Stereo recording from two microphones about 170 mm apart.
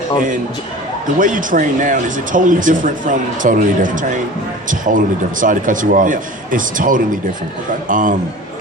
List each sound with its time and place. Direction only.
1.2 s speech: 50° right (ahead or behind)